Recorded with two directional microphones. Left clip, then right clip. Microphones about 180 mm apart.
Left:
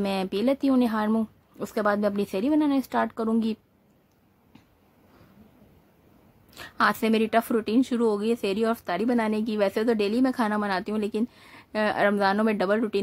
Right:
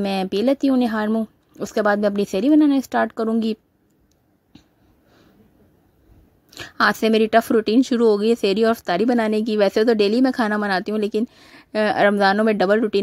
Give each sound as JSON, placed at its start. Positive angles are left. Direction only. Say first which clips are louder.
{"t": 0.0, "sound": "a woman's voice", "louder": "right 5 dB", "side_deg": -30}
{"t": 6.5, "sound": "a woman's voice", "louder": "right 5 dB", "side_deg": -35}